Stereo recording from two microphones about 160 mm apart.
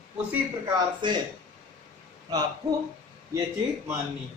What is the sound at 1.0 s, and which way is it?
Speech, 30° right (ahead or behind).